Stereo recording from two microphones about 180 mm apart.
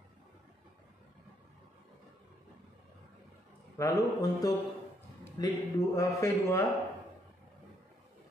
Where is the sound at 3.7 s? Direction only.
15° left (ahead or behind).